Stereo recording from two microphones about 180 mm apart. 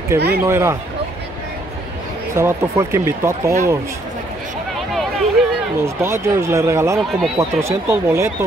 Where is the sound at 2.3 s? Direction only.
15° right (ahead or behind).